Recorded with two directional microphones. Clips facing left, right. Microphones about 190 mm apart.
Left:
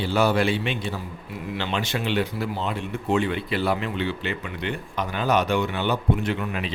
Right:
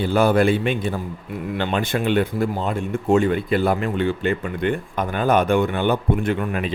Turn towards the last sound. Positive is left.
turn(degrees=-50)  # may be behind; listen again after turning